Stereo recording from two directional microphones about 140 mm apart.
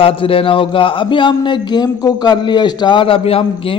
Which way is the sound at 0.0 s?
40° left (ahead or behind).